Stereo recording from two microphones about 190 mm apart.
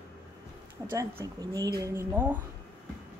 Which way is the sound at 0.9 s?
15° right (ahead or behind).